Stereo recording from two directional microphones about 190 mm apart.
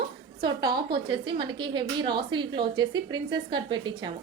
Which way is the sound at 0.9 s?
25° right (ahead or behind).